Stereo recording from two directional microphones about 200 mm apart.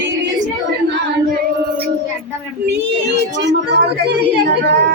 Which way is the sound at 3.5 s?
55° right (ahead or behind).